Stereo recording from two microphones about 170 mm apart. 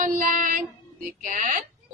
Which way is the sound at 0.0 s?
50° right (ahead or behind).